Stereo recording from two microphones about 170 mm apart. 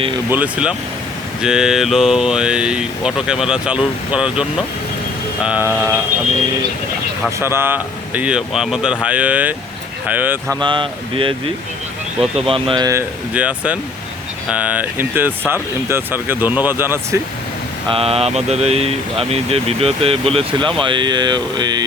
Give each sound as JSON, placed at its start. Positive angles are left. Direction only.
{"t": 0.3, "sound": "speech", "side_deg": -10}
{"t": 7.3, "sound": "speech", "side_deg": -15}
{"t": 10.6, "sound": "speech", "side_deg": -30}
{"t": 12.5, "sound": "speech", "side_deg": -30}
{"t": 17.8, "sound": "speech", "side_deg": -35}